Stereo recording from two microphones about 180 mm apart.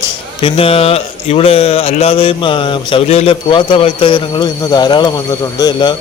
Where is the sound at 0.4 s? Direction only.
30° left (ahead or behind).